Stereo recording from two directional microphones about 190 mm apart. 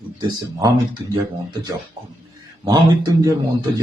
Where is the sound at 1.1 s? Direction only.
20° right (ahead or behind).